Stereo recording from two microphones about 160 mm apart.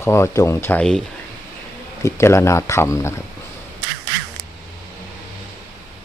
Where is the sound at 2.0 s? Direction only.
15° left (ahead or behind).